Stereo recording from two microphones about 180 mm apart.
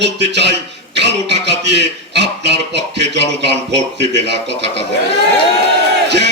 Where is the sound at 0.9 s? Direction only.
75° right (ahead or behind).